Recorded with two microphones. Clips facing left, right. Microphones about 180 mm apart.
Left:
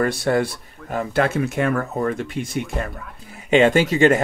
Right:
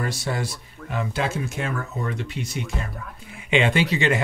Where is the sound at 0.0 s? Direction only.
55° left (ahead or behind).